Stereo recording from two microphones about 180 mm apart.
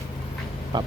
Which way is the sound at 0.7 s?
25° right (ahead or behind).